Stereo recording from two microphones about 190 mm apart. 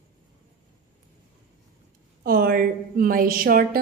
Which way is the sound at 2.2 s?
50° right (ahead or behind).